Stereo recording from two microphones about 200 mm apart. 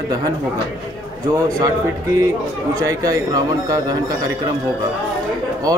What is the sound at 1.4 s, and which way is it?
Speech, 20° right (ahead or behind).